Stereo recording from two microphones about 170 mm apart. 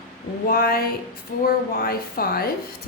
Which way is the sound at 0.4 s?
60° left (ahead or behind).